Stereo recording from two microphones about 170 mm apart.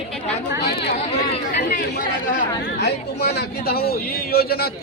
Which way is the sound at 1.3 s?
45° left (ahead or behind).